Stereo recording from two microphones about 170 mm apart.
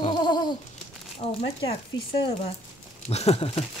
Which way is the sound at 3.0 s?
40° left (ahead or behind).